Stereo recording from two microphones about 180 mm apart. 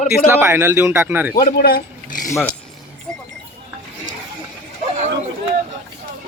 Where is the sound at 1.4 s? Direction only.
55° left (ahead or behind).